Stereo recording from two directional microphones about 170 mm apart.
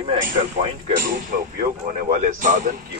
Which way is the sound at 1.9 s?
50° right (ahead or behind).